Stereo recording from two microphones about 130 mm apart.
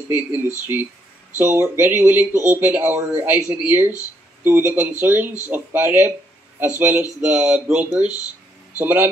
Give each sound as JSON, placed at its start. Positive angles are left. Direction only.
{"t": 0.1, "sound": "speech", "side_deg": -15}